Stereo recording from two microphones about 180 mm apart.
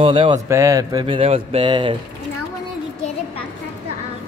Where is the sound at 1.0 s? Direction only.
30° right (ahead or behind).